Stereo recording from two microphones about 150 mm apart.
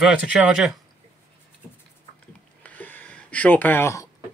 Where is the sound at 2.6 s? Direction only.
10° left (ahead or behind).